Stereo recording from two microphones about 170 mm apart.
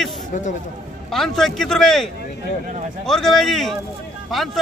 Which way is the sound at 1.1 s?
Centre (ahead or behind).